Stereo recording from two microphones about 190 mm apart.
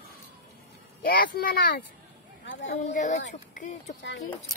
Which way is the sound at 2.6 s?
40° left (ahead or behind).